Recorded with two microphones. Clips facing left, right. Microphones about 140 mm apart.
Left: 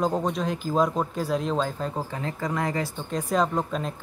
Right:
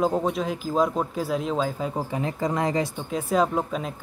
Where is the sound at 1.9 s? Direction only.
15° right (ahead or behind).